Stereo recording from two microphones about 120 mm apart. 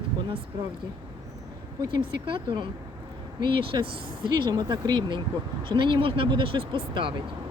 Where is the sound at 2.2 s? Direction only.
45° right (ahead or behind).